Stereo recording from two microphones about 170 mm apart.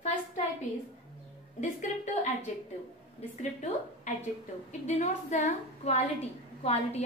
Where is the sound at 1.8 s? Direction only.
45° left (ahead or behind).